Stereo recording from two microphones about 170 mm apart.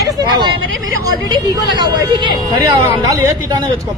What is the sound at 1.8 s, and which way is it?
Speech, 25° right (ahead or behind).